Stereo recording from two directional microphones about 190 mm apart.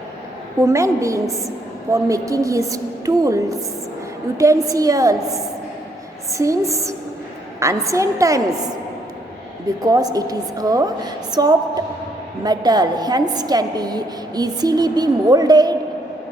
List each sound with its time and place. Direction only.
0.6 s a woman's voice: 15° right (ahead or behind)
9.8 s a woman's voice: 20° right (ahead or behind)